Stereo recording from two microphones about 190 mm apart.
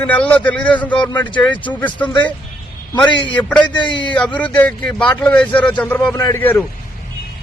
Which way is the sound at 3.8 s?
25° left (ahead or behind).